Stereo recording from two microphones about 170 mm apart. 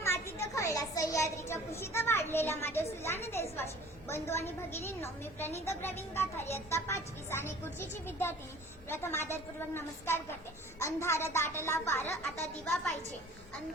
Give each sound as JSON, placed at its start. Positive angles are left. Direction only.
{"t": 0.0, "sound": "a child's voice", "side_deg": 15}